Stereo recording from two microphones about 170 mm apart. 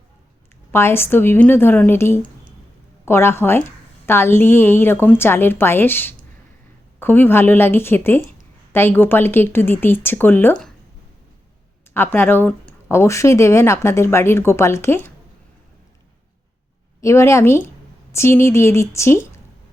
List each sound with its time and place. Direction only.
0.7 s speech: 15° left (ahead or behind)
11.9 s speech: 10° left (ahead or behind)
17.0 s speech: 15° left (ahead or behind)